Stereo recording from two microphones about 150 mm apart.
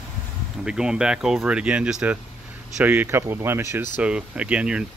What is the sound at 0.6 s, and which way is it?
Speech, 5° right (ahead or behind).